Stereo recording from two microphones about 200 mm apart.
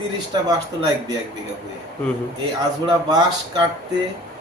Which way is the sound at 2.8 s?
20° right (ahead or behind).